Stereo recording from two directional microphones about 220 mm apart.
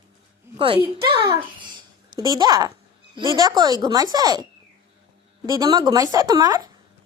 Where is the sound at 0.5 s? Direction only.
25° right (ahead or behind).